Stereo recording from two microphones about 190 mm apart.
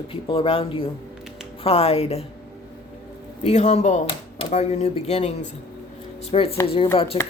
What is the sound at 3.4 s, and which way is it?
Speech, 35° left (ahead or behind).